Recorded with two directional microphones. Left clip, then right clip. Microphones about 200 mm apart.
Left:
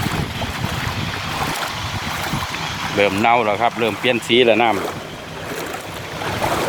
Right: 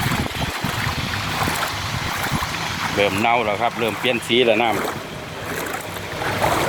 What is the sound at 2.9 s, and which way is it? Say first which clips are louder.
Speech: left 3 dB; 20° left (ahead or behind).